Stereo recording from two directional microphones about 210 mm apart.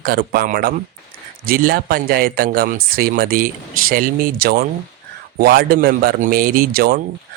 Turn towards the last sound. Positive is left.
turn(degrees=-45)  # may be behind; listen again after turning